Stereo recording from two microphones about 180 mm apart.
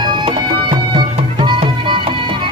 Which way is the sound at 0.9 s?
25° right (ahead or behind).